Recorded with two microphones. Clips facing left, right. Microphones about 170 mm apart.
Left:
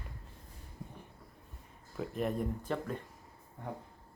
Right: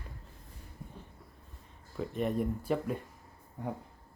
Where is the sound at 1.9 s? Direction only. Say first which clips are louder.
Right 2 dB; centre (ahead or behind).